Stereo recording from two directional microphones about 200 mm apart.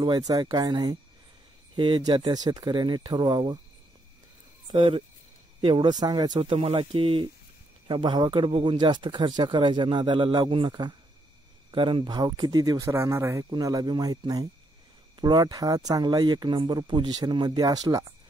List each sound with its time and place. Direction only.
0.3 s speech: 20° right (ahead or behind)
4.6 s speech: 25° right (ahead or behind)